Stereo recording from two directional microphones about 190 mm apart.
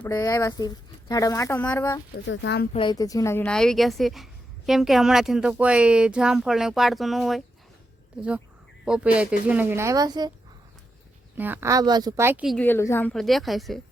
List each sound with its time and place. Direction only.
0.1 s speech: 15° left (ahead or behind)
2.2 s speech: 75° left (ahead or behind)
2.7 s speech: 20° left (ahead or behind); by 7.4 s centre (ahead or behind)
8.8 s a woman's voice: 5° right (ahead or behind); by 10.3 s 20° right (ahead or behind)
11.3 s a woman's voice: 10° right (ahead or behind)
12.5 s speech: 10° left (ahead or behind)